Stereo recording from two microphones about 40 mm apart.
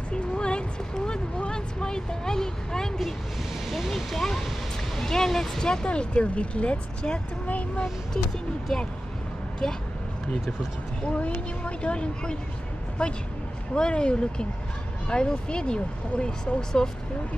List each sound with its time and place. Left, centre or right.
0.1 s a sound: left
1.5 s music: centre
3.6 s speech: centre
5.9 s speech: left
11.0 s speech: left